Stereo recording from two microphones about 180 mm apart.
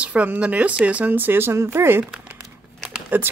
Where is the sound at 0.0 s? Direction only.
10° right (ahead or behind).